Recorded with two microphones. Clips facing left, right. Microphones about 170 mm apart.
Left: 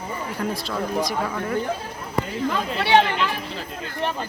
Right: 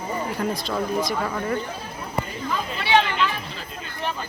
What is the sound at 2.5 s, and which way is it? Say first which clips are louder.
Speech: left 2 dB; 65° left (ahead or behind).